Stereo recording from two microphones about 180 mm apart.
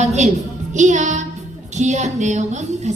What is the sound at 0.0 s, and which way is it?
Music, 40° right (ahead or behind).